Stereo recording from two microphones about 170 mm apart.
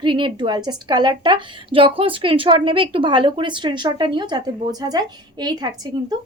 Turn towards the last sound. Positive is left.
turn(degrees=-25)  # may be behind; listen again after turning